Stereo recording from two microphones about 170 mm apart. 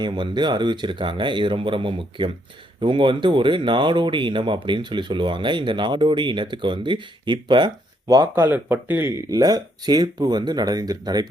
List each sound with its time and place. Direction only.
0.0 s speech: 25° right (ahead or behind)
8.4 s speech: 10° right (ahead or behind)